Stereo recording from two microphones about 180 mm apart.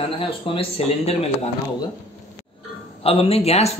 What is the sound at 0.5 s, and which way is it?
Speech, 30° left (ahead or behind).